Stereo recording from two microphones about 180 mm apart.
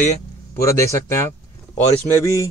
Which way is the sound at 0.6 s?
15° left (ahead or behind).